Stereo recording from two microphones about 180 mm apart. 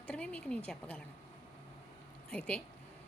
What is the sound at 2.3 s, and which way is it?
Speech, 5° left (ahead or behind).